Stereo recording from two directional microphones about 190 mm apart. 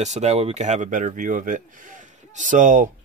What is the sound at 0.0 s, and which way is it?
Speech, 35° right (ahead or behind).